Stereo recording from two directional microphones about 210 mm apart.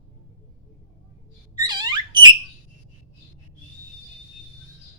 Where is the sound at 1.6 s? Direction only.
20° right (ahead or behind).